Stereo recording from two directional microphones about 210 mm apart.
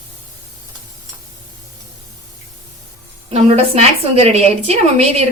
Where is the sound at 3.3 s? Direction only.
30° right (ahead or behind).